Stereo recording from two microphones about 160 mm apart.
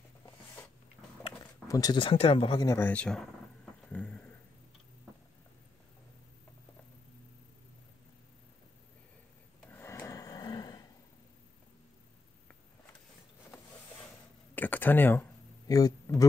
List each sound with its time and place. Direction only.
1.7 s speech: 25° left (ahead or behind)
2.6 s speech: 15° left (ahead or behind)
3.9 s a sound: 10° left (ahead or behind)
9.7 s snoring: 15° left (ahead or behind)
14.5 s a sound: 10° left (ahead or behind)
15.7 s speech: 20° left (ahead or behind)